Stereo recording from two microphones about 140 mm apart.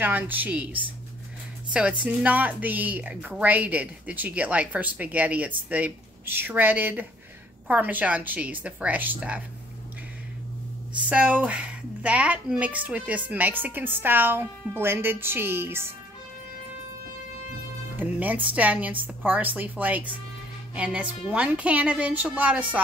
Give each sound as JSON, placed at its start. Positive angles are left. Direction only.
{"t": 0.0, "sound": "a woman's voice", "side_deg": -10}
{"t": 1.7, "sound": "a woman's voice", "side_deg": -10}
{"t": 11.1, "sound": "a woman's voice", "side_deg": -10}
{"t": 17.9, "sound": "a woman's voice", "side_deg": -10}